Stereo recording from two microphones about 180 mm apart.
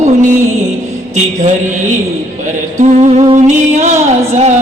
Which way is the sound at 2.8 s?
40° right (ahead or behind).